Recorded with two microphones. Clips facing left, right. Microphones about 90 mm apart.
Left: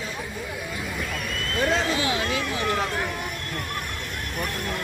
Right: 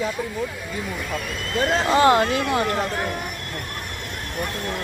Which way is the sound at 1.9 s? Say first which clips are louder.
Right 9 dB; 50° right (ahead or behind).